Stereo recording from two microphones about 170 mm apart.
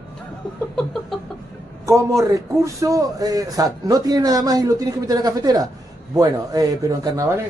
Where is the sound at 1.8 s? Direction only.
15° right (ahead or behind).